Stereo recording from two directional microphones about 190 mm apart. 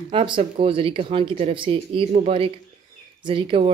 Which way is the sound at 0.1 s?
25° right (ahead or behind).